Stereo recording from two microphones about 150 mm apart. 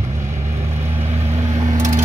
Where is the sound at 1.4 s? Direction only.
50° right (ahead or behind).